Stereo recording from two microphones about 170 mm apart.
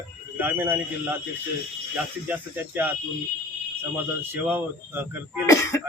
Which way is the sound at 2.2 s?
10° right (ahead or behind).